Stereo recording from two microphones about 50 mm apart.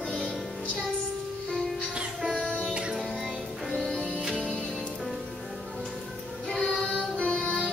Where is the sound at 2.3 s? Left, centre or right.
Centre.